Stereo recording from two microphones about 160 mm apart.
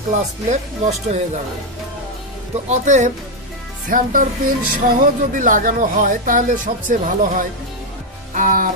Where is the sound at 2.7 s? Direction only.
50° right (ahead or behind).